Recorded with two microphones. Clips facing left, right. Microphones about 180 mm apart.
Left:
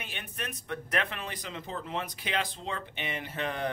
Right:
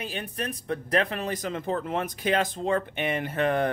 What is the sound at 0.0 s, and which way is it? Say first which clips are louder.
A man's voice: right 8 dB; 35° right (ahead or behind).